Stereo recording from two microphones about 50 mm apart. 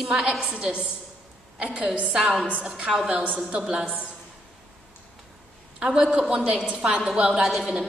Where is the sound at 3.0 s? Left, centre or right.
Right.